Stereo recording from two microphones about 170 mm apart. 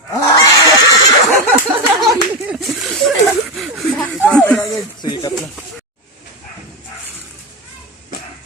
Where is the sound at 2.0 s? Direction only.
Centre (ahead or behind).